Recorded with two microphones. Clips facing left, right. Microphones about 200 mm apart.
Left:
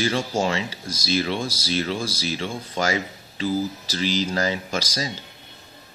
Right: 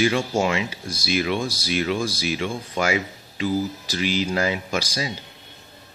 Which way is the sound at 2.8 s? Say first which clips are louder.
Right 1 dB; 35° left (ahead or behind).